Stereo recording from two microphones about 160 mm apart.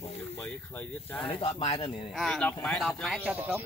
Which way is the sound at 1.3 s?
35° left (ahead or behind).